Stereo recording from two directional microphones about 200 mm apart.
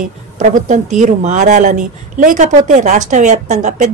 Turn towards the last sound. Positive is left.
turn(degrees=-35)  # may be behind; listen again after turning